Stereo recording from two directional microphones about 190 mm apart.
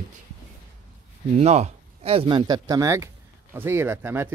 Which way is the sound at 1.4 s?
35° right (ahead or behind).